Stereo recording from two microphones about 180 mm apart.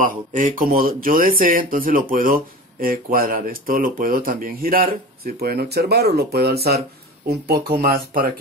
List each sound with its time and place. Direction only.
0.0 s speech: 50° right (ahead or behind)